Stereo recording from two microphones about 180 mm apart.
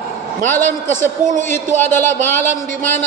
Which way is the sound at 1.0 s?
45° right (ahead or behind).